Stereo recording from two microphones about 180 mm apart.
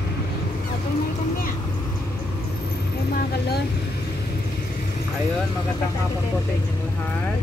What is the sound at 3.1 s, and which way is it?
Vehicle, 60° left (ahead or behind).